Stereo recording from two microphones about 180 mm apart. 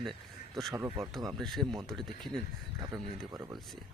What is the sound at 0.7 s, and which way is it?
Speech, 15° right (ahead or behind).